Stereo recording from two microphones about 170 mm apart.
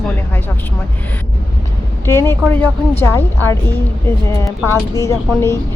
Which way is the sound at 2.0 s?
15° left (ahead or behind).